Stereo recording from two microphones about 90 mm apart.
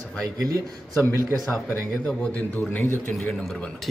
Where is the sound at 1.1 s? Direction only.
35° right (ahead or behind).